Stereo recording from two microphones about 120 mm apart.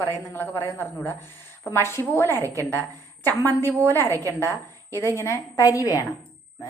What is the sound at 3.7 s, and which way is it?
Speech, 20° right (ahead or behind).